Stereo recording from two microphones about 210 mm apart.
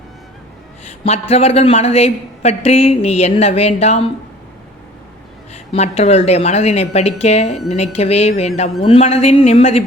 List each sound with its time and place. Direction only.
1.0 s speech: 30° left (ahead or behind)
5.7 s speech: 30° left (ahead or behind)